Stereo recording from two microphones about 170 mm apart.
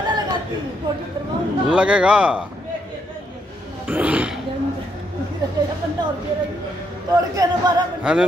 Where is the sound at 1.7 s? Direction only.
5° right (ahead or behind).